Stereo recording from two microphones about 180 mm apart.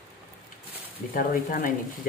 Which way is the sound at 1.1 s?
50° left (ahead or behind).